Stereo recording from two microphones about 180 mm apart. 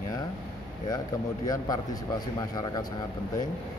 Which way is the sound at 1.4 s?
20° left (ahead or behind).